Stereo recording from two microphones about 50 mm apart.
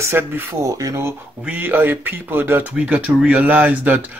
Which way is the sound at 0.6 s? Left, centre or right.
Right.